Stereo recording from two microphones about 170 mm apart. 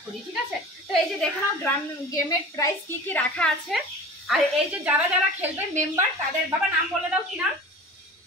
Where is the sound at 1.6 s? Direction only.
20° left (ahead or behind).